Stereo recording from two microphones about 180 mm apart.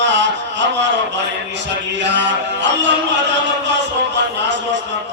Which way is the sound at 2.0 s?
80° right.